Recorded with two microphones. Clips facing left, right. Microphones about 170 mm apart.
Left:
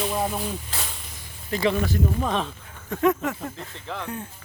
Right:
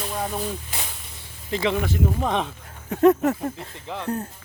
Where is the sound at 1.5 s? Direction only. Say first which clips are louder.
Even; 25° right (ahead or behind).